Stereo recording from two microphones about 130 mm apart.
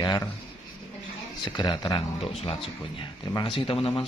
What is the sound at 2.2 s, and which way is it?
Speech, 50° left (ahead or behind).